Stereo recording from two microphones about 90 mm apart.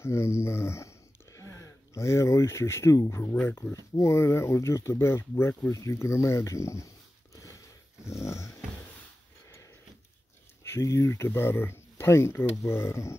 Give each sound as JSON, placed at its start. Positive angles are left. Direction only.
{"t": 0.0, "sound": "speech", "side_deg": 30}
{"t": 8.0, "sound": "dog", "side_deg": 30}
{"t": 10.6, "sound": "speech", "side_deg": 30}